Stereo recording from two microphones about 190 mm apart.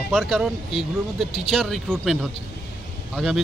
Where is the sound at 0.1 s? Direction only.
Centre (ahead or behind).